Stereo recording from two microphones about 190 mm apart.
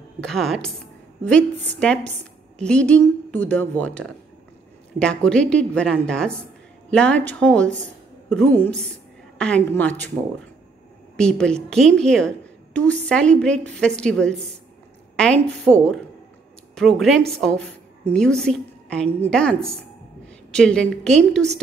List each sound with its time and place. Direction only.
0.2 s a woman's voice: centre (ahead or behind)
11.1 s a woman's voice: 5° left (ahead or behind)